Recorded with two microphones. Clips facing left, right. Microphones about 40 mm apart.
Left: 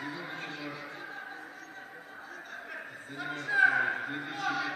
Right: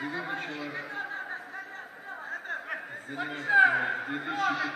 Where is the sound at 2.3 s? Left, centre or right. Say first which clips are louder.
Right 9 dB; right.